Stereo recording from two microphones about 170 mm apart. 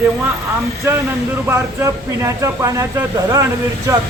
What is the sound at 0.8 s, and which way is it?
Speech, 15° right (ahead or behind).